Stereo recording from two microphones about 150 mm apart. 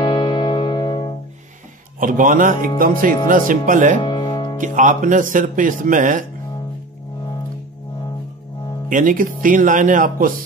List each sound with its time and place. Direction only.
0.0 s music: 30° left (ahead or behind)
2.0 s speech: 60° right (ahead or behind)
4.0 s music: 30° left (ahead or behind)
4.6 s speech: 60° right (ahead or behind)
8.8 s speech: 65° right (ahead or behind)